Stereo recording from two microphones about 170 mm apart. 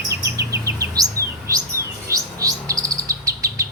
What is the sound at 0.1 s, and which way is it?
Bird vocalization, 20° right (ahead or behind).